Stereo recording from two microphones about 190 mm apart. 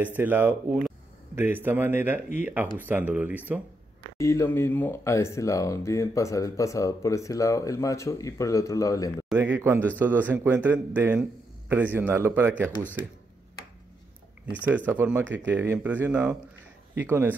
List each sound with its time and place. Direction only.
0.0 s speech: 10° right (ahead or behind)
4.2 s speech: 15° left (ahead or behind)
9.3 s speech: 10° right (ahead or behind)
14.9 s speech: 10° right (ahead or behind)